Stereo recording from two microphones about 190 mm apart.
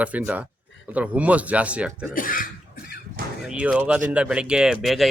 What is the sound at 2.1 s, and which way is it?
Speech, 45° left (ahead or behind).